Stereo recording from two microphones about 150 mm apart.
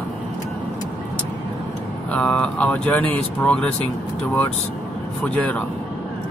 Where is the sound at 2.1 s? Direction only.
10° left (ahead or behind).